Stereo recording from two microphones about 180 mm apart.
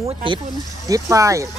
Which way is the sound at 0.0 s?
30° right (ahead or behind).